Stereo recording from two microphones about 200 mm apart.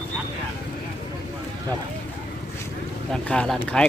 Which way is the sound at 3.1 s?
5° left (ahead or behind).